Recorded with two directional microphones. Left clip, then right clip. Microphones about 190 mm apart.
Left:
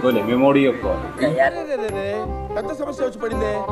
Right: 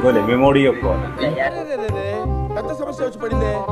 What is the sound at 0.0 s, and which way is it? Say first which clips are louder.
Speech: right 3 dB; centre (ahead or behind).